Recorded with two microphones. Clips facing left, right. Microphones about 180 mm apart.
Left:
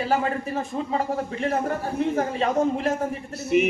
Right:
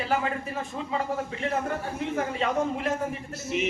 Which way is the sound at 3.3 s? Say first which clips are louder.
Left 9 dB; 65° left (ahead or behind).